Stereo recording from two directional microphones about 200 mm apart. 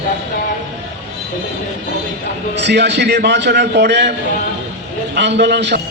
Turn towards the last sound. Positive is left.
turn(degrees=-55)  # may be behind; listen again after turning